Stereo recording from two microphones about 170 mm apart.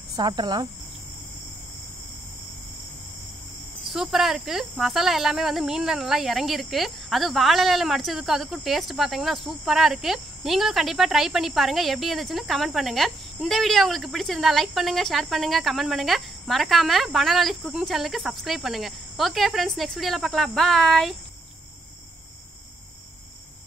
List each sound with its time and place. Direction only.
0.1 s cricket: 25° right (ahead or behind)
3.8 s speech: centre (ahead or behind)